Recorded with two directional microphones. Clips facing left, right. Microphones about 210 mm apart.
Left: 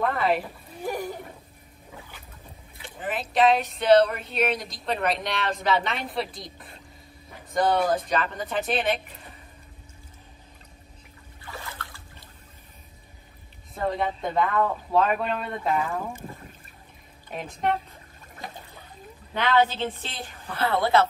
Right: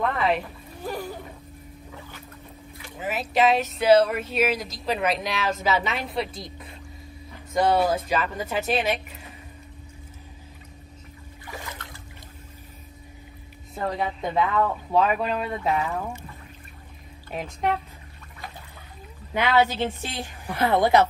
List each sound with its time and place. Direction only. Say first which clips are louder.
0.0 s speech: even; centre (ahead or behind)
0.7 s a sound: left 2 dB; 15° left (ahead or behind)
3.0 s speech: even; 5° right (ahead or behind)
11.5 s trickle: right 2 dB; 20° right (ahead or behind)
13.7 s speech: left 1 dB; centre (ahead or behind)
17.3 s speech: right 1 dB; centre (ahead or behind)
19.3 s a woman's voice: right 1 dB; 10° right (ahead or behind)